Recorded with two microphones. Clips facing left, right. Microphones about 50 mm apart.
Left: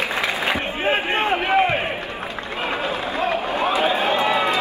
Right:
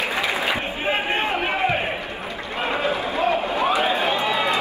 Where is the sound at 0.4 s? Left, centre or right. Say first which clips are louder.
Left 2 dB; left.